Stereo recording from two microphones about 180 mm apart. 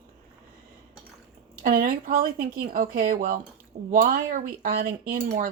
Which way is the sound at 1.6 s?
50° right (ahead or behind).